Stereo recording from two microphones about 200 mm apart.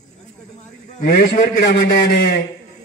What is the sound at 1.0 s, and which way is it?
A man's voice, 55° left (ahead or behind).